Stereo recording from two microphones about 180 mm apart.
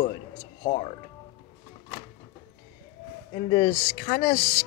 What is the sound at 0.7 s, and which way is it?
Speech, 40° left (ahead or behind).